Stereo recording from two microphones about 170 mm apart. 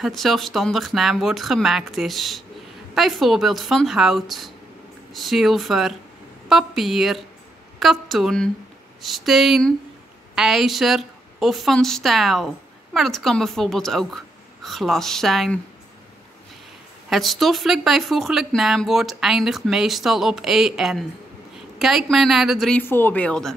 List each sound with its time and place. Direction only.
0.0 s speech: centre (ahead or behind)
17.1 s speech: centre (ahead or behind)